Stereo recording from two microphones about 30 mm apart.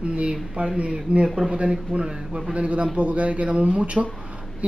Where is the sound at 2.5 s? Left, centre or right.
Right.